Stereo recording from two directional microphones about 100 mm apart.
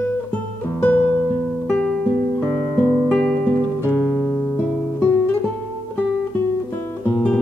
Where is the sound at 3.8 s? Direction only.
25° left (ahead or behind).